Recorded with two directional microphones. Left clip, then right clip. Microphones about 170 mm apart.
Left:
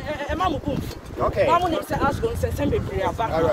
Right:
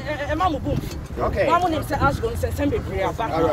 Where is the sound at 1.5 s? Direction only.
15° left (ahead or behind).